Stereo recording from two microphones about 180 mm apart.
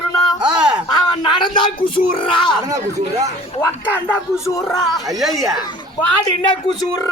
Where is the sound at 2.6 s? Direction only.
20° right (ahead or behind).